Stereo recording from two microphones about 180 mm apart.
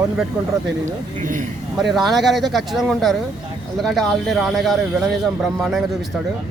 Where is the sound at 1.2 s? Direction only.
45° right (ahead or behind).